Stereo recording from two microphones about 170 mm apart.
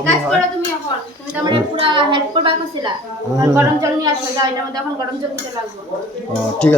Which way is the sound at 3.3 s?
20° right (ahead or behind).